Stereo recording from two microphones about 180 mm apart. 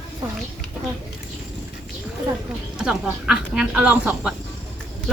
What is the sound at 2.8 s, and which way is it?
Speech, 5° right (ahead or behind).